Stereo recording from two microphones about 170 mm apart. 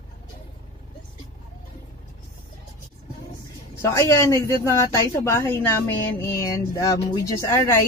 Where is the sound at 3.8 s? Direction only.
15° left (ahead or behind).